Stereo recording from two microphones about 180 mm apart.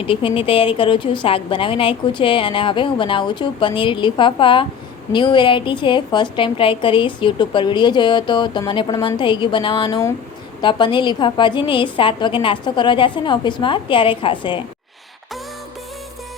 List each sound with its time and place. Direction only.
0.0 s a woman's voice: 30° left (ahead or behind)